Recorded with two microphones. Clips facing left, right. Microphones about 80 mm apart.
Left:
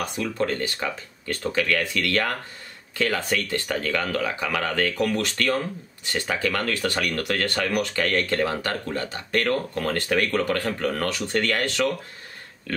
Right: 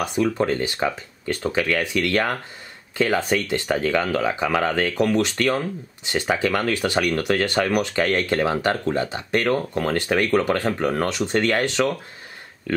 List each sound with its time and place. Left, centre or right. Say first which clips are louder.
0.0 s speech: right 5 dB; centre